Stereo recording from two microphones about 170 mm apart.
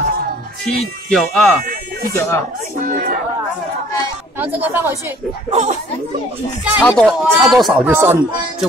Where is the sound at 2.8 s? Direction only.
50° right (ahead or behind).